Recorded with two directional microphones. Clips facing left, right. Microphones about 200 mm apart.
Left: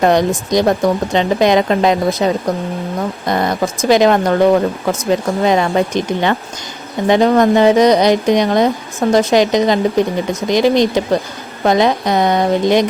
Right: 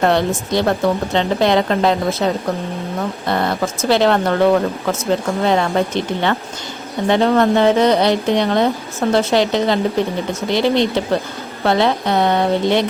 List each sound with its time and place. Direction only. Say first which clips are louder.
0.0 s a woman's voice: left 3 dB; 15° left (ahead or behind)